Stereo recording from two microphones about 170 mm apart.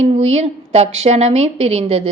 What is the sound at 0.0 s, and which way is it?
A woman's voice, 40° right (ahead or behind).